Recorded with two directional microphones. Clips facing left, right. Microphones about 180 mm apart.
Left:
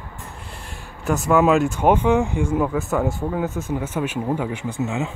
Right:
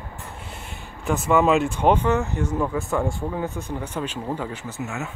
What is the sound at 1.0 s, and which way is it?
Speech, centre (ahead or behind).